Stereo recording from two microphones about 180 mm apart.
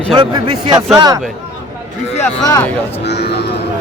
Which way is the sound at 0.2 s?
25° right (ahead or behind).